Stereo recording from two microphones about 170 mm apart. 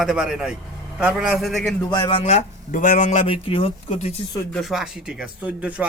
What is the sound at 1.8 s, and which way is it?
A man's voice, 25° left (ahead or behind).